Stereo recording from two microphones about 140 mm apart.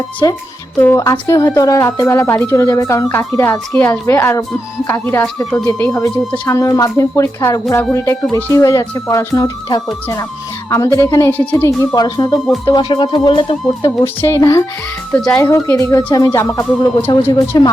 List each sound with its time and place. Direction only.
0.2 s a woman's voice: 25° left (ahead or behind)
11.9 s a woman's voice: 30° left (ahead or behind)
14.0 s a woman's voice: 20° left (ahead or behind)